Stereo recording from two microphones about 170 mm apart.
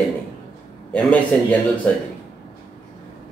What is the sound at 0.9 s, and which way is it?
Speech, 10° left (ahead or behind).